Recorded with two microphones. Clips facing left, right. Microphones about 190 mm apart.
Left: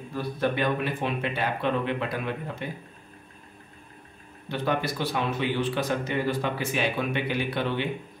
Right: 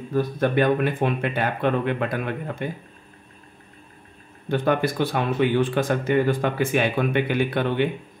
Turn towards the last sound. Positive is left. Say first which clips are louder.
# right 6 dB
turn(degrees=-55)  # may be behind; listen again after turning